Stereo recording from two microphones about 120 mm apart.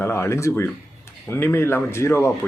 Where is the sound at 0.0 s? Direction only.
20° left (ahead or behind).